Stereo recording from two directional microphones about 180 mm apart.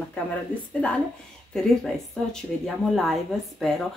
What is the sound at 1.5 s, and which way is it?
Speech, centre (ahead or behind).